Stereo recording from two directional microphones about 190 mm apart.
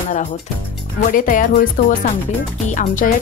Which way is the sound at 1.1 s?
45° left (ahead or behind).